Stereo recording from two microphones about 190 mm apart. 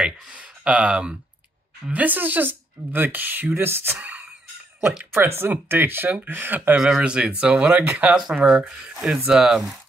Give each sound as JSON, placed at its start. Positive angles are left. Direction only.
{"t": 0.0, "sound": "speech", "side_deg": -5}